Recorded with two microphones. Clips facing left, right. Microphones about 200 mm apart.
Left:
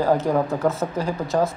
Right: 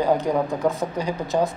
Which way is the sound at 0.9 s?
Centre (ahead or behind).